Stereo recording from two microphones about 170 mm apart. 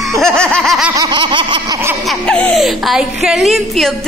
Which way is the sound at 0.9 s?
25° right (ahead or behind).